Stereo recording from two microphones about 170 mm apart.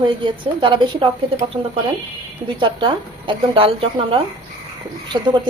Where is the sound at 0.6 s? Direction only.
30° right (ahead or behind).